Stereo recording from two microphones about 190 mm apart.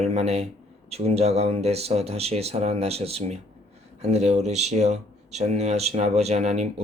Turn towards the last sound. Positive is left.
turn(degrees=-35)  # may be behind; listen again after turning